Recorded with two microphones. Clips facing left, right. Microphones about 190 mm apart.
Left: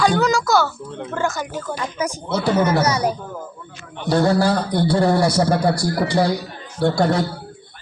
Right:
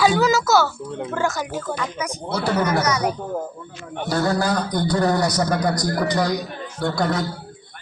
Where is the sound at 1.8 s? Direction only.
30° left (ahead or behind).